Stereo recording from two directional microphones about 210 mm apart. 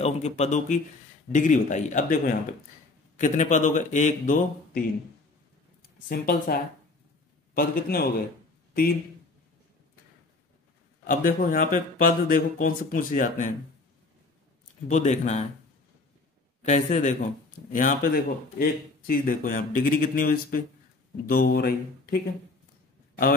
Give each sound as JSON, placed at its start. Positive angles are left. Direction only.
{"t": 0.0, "sound": "speech", "side_deg": 30}
{"t": 6.0, "sound": "speech", "side_deg": 45}
{"t": 11.1, "sound": "speech", "side_deg": 40}
{"t": 14.9, "sound": "speech", "side_deg": 35}
{"t": 16.6, "sound": "speech", "side_deg": 35}